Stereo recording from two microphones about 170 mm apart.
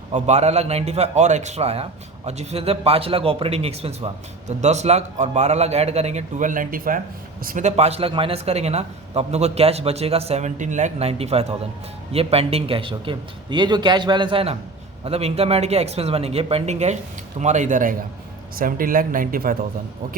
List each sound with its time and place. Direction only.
0.1 s a man's voice: 40° right (ahead or behind)